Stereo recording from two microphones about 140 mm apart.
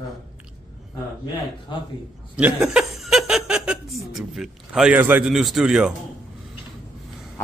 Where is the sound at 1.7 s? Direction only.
35° left (ahead or behind).